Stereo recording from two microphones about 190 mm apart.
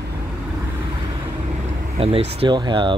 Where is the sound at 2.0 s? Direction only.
30° right (ahead or behind).